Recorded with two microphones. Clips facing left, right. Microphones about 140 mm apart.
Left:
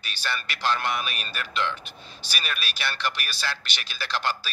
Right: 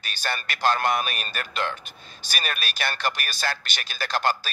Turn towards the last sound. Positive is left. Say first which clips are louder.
# right 4 dB
turn(degrees=-45)  # may be behind; listen again after turning